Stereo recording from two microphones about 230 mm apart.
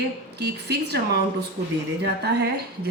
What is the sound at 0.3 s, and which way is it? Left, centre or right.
Speech, right.